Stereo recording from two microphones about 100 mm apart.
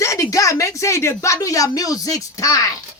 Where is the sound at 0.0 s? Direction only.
35° left (ahead or behind).